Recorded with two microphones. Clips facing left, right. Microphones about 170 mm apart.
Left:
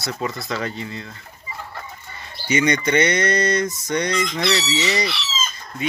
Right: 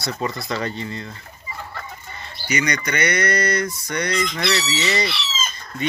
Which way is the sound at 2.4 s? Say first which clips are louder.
Left 4 dB; 25° left (ahead or behind).